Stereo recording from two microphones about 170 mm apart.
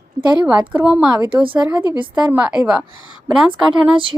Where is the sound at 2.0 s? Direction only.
10° right (ahead or behind).